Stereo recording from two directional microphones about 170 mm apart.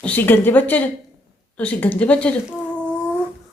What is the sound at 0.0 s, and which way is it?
A woman's voice, 10° left (ahead or behind).